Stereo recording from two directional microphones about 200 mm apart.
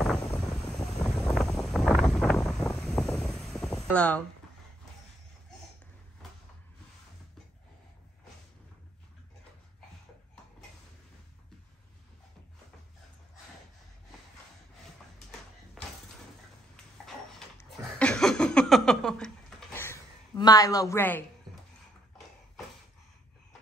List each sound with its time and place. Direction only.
0.0 s wind noise: 5° left (ahead or behind)
3.8 s speech: 5° left (ahead or behind)
17.6 s a sound: 5° left (ahead or behind)
20.3 s a man's voice: 20° left (ahead or behind)